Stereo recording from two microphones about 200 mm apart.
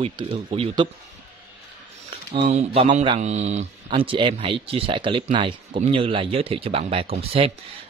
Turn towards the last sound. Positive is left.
turn(degrees=-30)  # may be behind; listen again after turning